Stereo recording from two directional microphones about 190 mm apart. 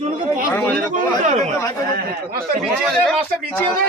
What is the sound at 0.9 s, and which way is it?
Speech, 40° right (ahead or behind).